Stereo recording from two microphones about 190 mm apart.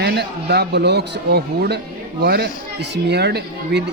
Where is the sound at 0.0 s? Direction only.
60° right (ahead or behind).